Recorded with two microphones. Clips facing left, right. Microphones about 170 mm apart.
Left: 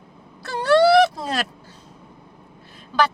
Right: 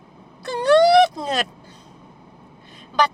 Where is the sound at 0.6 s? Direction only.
15° right (ahead or behind).